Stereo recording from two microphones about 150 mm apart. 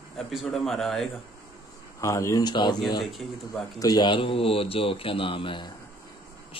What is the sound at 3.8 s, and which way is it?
Speech, 25° left (ahead or behind).